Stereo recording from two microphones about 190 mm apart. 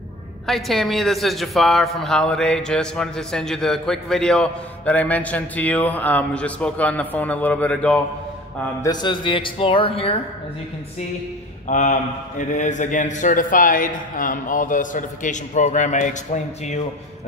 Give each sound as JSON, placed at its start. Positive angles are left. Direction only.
{"t": 0.5, "sound": "speech", "side_deg": 0}
{"t": 8.8, "sound": "speech", "side_deg": 25}
{"t": 11.6, "sound": "a man's voice", "side_deg": 40}